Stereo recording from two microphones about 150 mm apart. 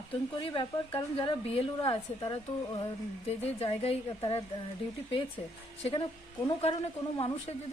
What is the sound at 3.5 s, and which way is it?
Speech, 40° left (ahead or behind).